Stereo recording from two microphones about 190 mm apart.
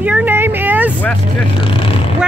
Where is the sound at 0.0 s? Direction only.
10° right (ahead or behind).